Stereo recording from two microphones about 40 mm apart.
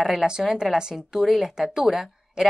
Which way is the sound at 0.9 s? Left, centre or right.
Centre.